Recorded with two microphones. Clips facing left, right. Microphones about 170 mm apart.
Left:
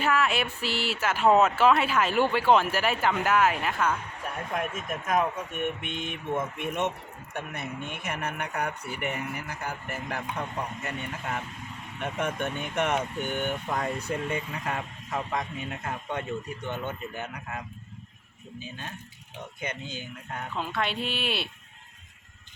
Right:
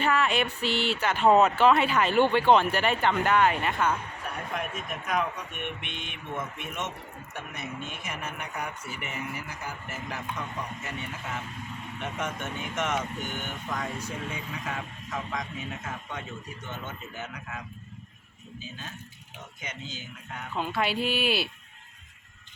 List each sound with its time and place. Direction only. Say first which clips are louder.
0.0 s speech: even; 5° left (ahead or behind)
4.5 s speech: left 4 dB; 45° left (ahead or behind)
12.1 s speech: left 5 dB; 60° left (ahead or behind)
19.6 s speech: left 4 dB; 55° left (ahead or behind)
20.6 s speech: right 3 dB; 5° right (ahead or behind)